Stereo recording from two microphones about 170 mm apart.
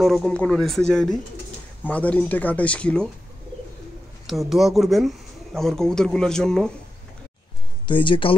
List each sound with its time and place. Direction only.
0.0 s speech: centre (ahead or behind)
4.3 s speech: centre (ahead or behind)
7.8 s speech: 30° left (ahead or behind)